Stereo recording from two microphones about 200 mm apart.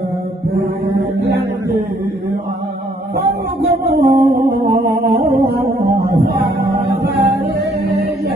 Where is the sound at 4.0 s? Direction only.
50° right (ahead or behind).